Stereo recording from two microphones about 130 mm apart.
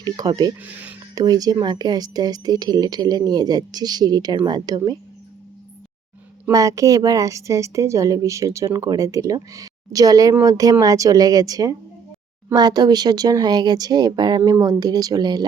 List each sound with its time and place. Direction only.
0.0 s speech: 30° right (ahead or behind)
0.6 s speech: 10° right (ahead or behind)
1.1 s speech: 30° right (ahead or behind)
6.5 s a woman's voice: 25° right (ahead or behind)